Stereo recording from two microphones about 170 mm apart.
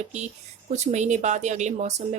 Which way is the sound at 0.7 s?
45° right (ahead or behind).